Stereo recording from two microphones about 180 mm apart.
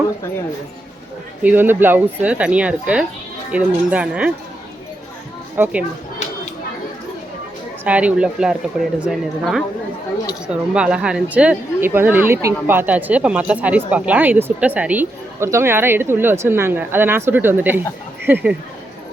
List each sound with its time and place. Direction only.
1.4 s speech: 10° right (ahead or behind)
5.5 s speech: 10° right (ahead or behind)
7.9 s speech: 10° right (ahead or behind)